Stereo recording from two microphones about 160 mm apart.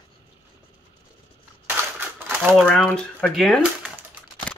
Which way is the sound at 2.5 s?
5° left (ahead or behind).